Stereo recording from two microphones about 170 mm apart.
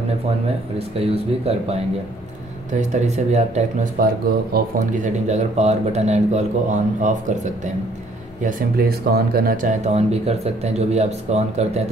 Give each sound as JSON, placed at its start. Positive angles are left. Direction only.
{"t": 0.7, "sound": "speech", "side_deg": -35}
{"t": 4.0, "sound": "speech", "side_deg": -60}
{"t": 5.0, "sound": "speech", "side_deg": -40}
{"t": 8.5, "sound": "speech", "side_deg": -60}